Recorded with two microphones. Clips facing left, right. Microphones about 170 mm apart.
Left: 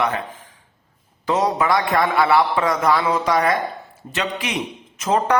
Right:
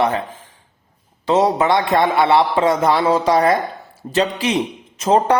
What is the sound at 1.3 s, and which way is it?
A man's voice, 30° right (ahead or behind).